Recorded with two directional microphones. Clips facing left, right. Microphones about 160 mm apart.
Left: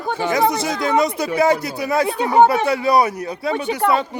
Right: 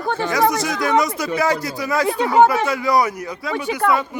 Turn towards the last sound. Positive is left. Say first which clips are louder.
# left 1 dB
turn(degrees=35)  # may be behind; listen again after turning